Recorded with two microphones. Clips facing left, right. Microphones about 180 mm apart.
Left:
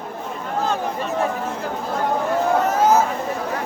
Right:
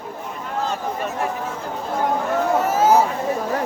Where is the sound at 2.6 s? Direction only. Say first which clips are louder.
Right 2 dB; 5° right (ahead or behind).